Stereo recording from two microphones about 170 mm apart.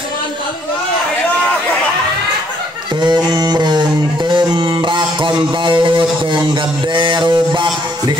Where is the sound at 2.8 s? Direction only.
25° right (ahead or behind).